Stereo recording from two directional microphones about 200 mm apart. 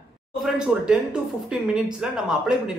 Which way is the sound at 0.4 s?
5° right (ahead or behind).